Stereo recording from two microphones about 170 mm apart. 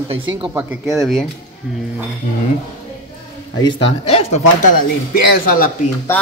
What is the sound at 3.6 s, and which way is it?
Speech, 35° left (ahead or behind).